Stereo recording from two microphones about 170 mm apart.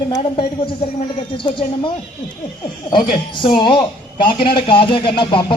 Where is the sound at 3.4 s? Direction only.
30° left (ahead or behind).